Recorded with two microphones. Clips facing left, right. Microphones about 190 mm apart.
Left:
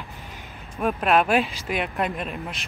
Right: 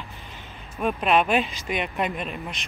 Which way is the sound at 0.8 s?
Centre (ahead or behind).